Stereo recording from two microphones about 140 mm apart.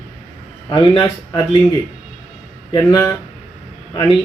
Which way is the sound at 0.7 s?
35° left (ahead or behind).